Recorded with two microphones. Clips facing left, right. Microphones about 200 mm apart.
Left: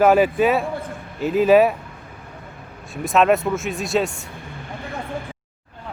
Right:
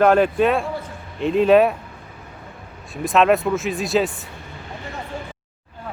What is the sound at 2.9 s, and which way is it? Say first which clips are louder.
Speech: even; centre (ahead or behind).